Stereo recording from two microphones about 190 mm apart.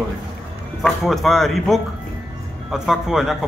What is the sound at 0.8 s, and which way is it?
Speech, centre (ahead or behind).